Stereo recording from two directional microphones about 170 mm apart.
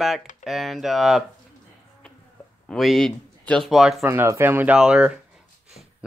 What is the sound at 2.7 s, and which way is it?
Speech, centre (ahead or behind).